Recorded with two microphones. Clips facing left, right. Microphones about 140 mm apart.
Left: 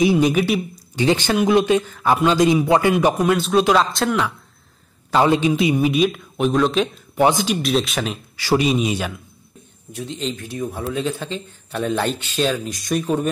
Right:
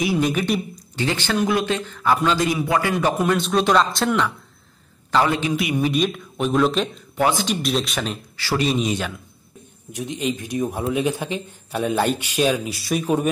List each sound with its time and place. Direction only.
0.0 s speech: 20° left (ahead or behind)
3.2 s speech: centre (ahead or behind)
5.2 s a man's voice: 25° left (ahead or behind)
5.8 s speech: 5° left (ahead or behind)
7.2 s a man's voice: 20° left (ahead or behind)
7.4 s speech: centre (ahead or behind)
8.4 s speech: 15° left (ahead or behind)
9.9 s a man's voice: 15° right (ahead or behind)